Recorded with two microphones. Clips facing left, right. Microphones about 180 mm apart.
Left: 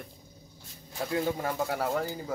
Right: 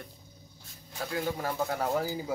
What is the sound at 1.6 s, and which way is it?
Speech, 5° left (ahead or behind).